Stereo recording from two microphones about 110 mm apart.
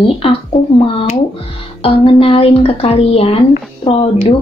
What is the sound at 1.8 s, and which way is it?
Speech, 55° left (ahead or behind).